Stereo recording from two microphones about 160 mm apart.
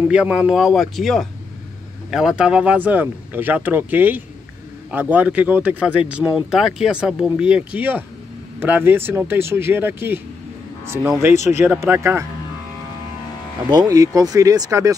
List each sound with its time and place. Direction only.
0.1 s speech: 5° right (ahead or behind)
13.7 s speech: 25° right (ahead or behind)